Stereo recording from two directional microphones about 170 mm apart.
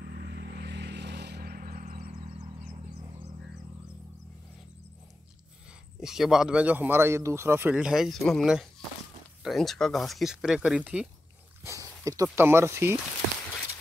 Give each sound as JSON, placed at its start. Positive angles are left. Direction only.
{"t": 0.0, "sound": "vehicle", "side_deg": -80}
{"t": 2.0, "sound": "vehicle", "side_deg": -40}
{"t": 5.9, "sound": "speech", "side_deg": 0}
{"t": 11.6, "sound": "speech", "side_deg": -20}